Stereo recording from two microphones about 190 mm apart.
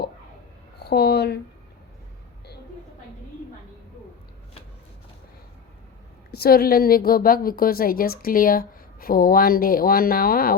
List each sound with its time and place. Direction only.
0.8 s speech: 60° left (ahead or behind)
6.3 s a woman's voice: 55° left (ahead or behind)